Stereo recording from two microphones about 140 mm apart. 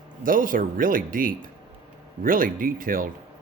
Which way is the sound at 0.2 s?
80° right.